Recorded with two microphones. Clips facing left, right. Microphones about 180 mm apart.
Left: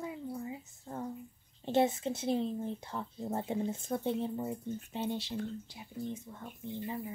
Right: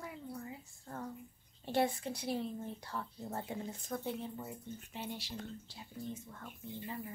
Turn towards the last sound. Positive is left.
turn(degrees=20)  # may be behind; listen again after turning